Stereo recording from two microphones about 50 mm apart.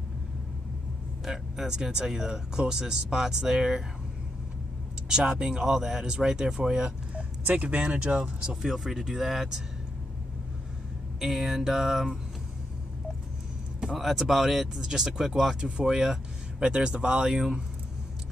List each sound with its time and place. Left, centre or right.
1.2 s speech: centre
5.1 s speech: centre
7.2 s speech: right
8.6 s speech: centre
11.1 s speech: centre
13.9 s speech: centre